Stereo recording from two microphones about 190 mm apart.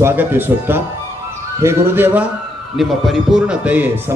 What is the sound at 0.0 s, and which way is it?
A man's voice, 10° right (ahead or behind).